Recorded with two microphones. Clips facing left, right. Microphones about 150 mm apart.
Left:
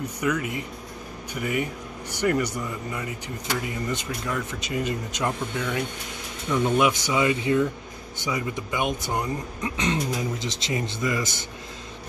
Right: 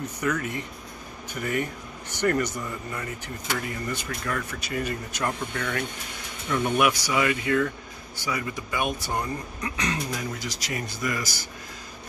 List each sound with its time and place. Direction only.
0.2 s speech: 10° left (ahead or behind)